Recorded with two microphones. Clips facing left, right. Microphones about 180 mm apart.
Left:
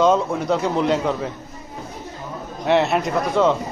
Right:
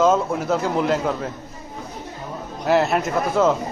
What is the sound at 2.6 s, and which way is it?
Speech, centre (ahead or behind).